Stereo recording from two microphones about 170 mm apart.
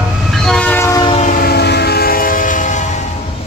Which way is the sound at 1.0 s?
40° left (ahead or behind).